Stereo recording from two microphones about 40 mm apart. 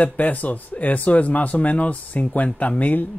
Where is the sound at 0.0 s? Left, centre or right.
Left.